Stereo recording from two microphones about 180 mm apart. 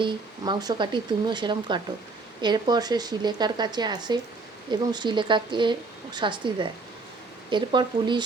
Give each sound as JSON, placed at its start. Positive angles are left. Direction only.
{"t": 0.0, "sound": "a woman's voice", "side_deg": -25}